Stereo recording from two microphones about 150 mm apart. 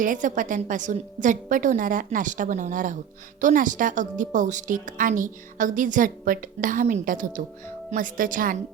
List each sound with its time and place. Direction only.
0.0 s a woman's voice: 60° right (ahead or behind)